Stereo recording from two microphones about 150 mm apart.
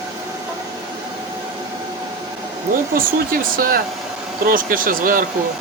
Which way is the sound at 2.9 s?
70° right (ahead or behind).